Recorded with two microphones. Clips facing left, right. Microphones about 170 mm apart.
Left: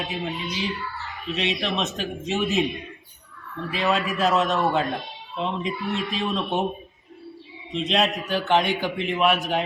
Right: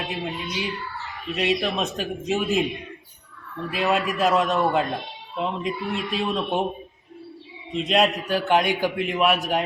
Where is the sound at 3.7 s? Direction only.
10° right (ahead or behind).